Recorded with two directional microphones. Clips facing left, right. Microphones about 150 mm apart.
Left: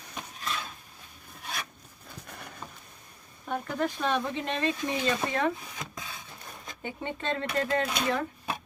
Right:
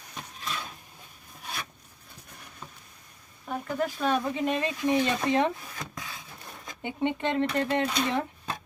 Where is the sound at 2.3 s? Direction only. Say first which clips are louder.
Left 6 dB; 90° left.